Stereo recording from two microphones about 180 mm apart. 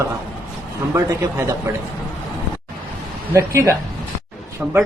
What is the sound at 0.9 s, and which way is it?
Speech, 15° right (ahead or behind).